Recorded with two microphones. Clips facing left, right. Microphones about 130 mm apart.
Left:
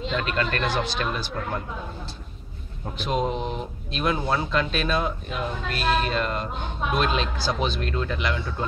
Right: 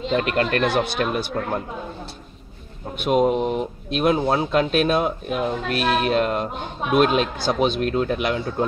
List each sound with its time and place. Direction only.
0.1 s speech: 55° right (ahead or behind)
3.1 s speech: 10° right (ahead or behind)
3.9 s speech: 50° right (ahead or behind)